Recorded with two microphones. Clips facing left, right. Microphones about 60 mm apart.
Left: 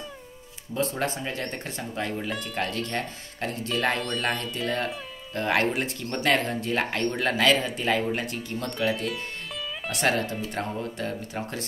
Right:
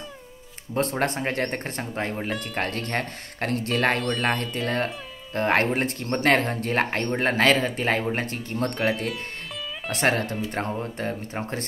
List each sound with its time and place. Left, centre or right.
0.7 s speech: right
9.8 s speech: right